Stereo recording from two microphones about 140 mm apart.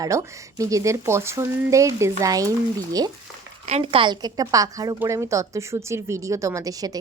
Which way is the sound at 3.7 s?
45° right (ahead or behind).